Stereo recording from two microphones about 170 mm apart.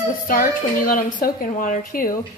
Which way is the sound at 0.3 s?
55° left (ahead or behind).